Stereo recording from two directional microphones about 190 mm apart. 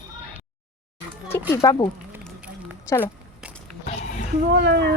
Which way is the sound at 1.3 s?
15° left (ahead or behind).